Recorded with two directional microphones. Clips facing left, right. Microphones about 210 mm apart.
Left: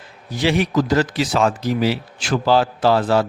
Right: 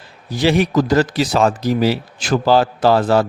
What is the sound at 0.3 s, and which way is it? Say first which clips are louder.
A man's voice: right 3 dB; 35° right (ahead or behind).